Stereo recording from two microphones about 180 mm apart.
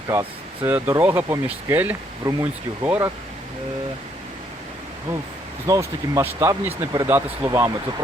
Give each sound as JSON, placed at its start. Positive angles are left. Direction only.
{"t": 0.1, "sound": "speech", "side_deg": -15}
{"t": 5.6, "sound": "speech", "side_deg": -20}